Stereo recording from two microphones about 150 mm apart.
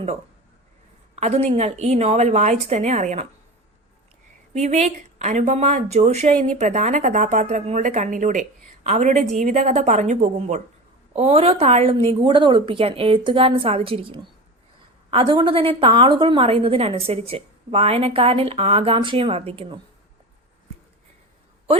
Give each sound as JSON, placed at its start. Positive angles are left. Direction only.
{"t": 1.1, "sound": "speech", "side_deg": -45}
{"t": 4.5, "sound": "speech", "side_deg": -50}
{"t": 12.2, "sound": "a woman's voice", "side_deg": -35}